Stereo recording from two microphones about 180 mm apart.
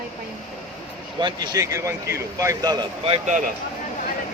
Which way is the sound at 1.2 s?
25° right (ahead or behind).